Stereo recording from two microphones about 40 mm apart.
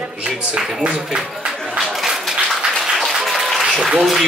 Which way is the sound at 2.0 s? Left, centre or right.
Centre.